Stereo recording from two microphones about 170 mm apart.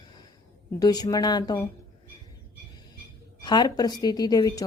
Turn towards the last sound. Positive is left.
turn(degrees=20)  # may be behind; listen again after turning